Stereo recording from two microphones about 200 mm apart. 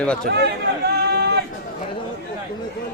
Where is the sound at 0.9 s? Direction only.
55° right (ahead or behind).